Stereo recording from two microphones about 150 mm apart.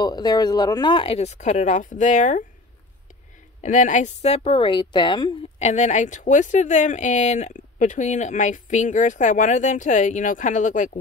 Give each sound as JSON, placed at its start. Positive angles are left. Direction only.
{"t": 0.0, "sound": "speech", "side_deg": 30}
{"t": 3.6, "sound": "speech", "side_deg": 55}
{"t": 5.6, "sound": "speech", "side_deg": 50}